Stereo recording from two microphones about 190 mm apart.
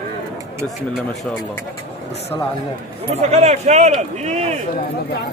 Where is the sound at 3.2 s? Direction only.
35° right (ahead or behind).